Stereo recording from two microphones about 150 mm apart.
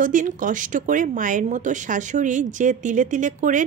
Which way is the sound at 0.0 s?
60° right (ahead or behind).